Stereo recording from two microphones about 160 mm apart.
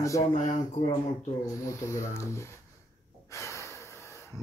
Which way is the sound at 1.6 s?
20° left (ahead or behind).